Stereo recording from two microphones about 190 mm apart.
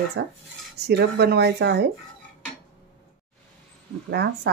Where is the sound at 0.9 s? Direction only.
60° right (ahead or behind).